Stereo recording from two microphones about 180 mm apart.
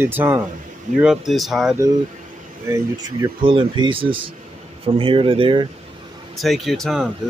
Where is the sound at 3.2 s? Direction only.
30° right (ahead or behind).